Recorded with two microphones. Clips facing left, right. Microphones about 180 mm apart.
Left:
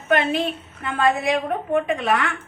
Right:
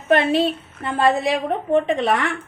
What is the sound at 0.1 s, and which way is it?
A woman's voice, 30° right (ahead or behind).